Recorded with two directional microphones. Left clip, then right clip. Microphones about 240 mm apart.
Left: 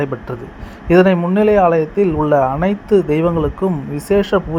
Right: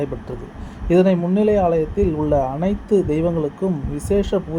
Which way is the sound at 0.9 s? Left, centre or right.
Centre.